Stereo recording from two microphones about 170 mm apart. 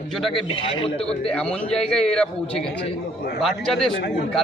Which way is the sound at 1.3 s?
5° left (ahead or behind).